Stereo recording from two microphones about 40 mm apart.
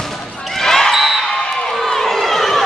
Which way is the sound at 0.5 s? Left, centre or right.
Centre.